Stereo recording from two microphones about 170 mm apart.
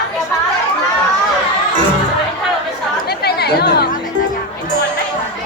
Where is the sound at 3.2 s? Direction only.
70° left (ahead or behind).